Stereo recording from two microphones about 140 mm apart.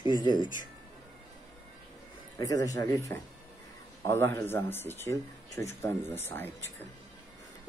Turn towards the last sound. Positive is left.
turn(degrees=15)  # may be behind; listen again after turning